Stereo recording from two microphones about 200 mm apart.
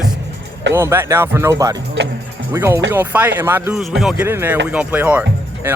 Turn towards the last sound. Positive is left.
turn(degrees=-5)  # may be behind; listen again after turning